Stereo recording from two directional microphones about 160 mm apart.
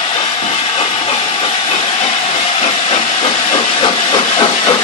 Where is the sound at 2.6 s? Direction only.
35° left (ahead or behind).